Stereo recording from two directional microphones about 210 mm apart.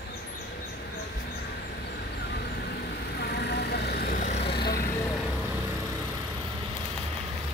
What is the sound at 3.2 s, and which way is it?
Vehicle, 55° left (ahead or behind).